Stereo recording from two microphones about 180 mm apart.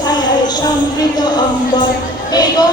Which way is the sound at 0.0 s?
20° left (ahead or behind).